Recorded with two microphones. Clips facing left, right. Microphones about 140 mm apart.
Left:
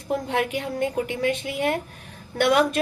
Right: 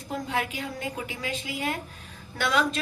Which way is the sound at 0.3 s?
60° left (ahead or behind).